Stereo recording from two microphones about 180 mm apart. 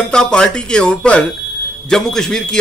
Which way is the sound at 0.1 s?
5° left (ahead or behind).